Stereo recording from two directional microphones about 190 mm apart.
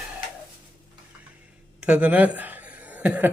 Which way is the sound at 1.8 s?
5° right (ahead or behind).